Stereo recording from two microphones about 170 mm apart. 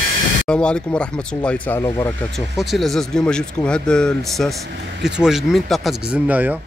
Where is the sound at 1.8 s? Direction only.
20° left (ahead or behind).